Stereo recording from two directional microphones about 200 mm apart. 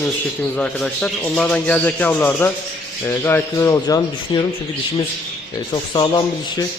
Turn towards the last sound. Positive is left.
turn(degrees=20)  # may be behind; listen again after turning